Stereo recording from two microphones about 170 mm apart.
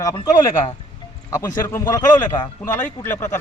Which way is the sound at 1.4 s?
15° left (ahead or behind).